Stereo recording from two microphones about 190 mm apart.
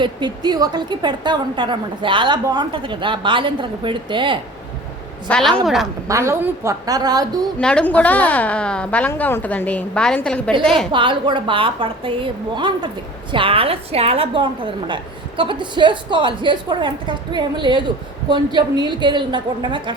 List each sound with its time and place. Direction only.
0.0 s a woman's voice: 20° right (ahead or behind)
5.3 s a woman's voice: centre (ahead or behind)
6.1 s a woman's voice: 15° right (ahead or behind)
7.6 s a woman's voice: 5° left (ahead or behind)
10.9 s a woman's voice: 25° right (ahead or behind)